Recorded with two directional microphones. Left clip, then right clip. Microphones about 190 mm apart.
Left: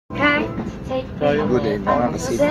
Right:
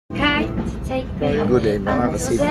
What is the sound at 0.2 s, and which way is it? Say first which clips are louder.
Speech: left 2 dB; 25° right (ahead or behind).